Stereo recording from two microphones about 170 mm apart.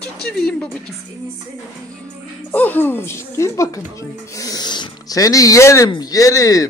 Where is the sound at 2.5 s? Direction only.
10° left (ahead or behind).